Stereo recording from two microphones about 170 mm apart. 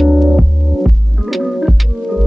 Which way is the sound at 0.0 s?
Centre (ahead or behind).